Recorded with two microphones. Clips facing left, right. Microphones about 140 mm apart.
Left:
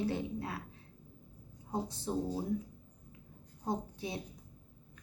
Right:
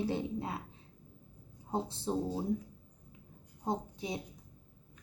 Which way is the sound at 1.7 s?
25° right (ahead or behind).